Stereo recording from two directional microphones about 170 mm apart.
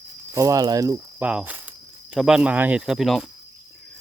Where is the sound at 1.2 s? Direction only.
5° right (ahead or behind).